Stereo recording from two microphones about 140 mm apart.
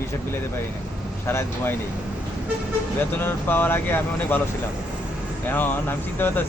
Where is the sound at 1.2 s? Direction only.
20° left (ahead or behind).